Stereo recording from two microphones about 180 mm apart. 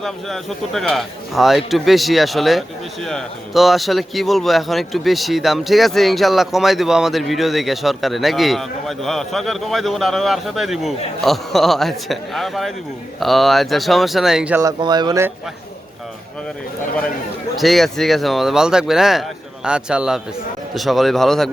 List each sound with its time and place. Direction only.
0.0 s a man's voice: centre (ahead or behind)
14.6 s speech: 20° right (ahead or behind)
17.6 s a man's voice: centre (ahead or behind)